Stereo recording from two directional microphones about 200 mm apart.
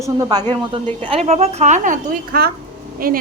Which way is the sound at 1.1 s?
30° right (ahead or behind).